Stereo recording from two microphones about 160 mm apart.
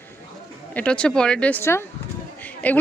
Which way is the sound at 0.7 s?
10° left (ahead or behind).